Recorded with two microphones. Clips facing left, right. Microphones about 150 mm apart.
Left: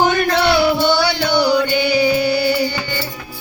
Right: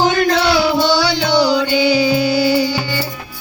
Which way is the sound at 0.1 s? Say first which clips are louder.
Right 1 dB; 55° left (ahead or behind).